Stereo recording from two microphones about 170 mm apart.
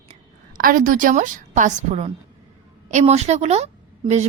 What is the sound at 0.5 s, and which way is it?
A woman's voice, 55° right (ahead or behind).